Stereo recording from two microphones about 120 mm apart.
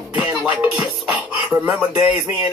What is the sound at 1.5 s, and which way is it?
Speech, 25° right (ahead or behind).